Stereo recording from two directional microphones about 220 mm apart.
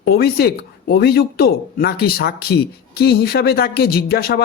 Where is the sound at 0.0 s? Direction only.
45° left (ahead or behind).